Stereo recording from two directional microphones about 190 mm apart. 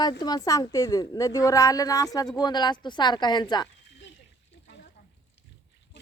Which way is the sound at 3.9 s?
65° left (ahead or behind).